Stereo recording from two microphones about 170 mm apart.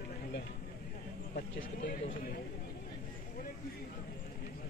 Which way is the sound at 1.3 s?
90° left.